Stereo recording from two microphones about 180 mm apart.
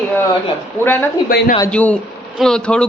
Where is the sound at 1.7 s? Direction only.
10° left (ahead or behind).